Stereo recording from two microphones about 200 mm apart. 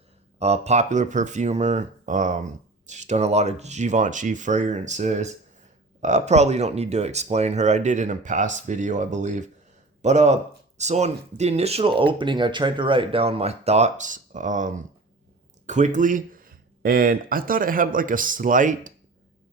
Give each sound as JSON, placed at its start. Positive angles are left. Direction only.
{"t": 0.3, "sound": "speech", "side_deg": -30}